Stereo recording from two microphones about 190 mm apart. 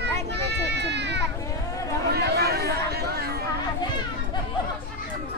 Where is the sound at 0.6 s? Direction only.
65° right (ahead or behind).